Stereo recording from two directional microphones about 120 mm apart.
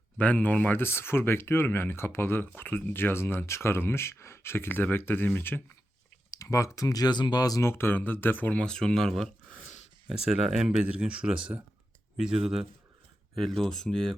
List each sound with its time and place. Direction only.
0.2 s speech: 10° left (ahead or behind)